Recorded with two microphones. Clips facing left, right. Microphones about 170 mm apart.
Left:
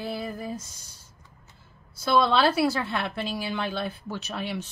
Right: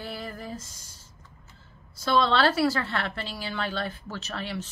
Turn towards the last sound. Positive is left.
turn(degrees=15)  # may be behind; listen again after turning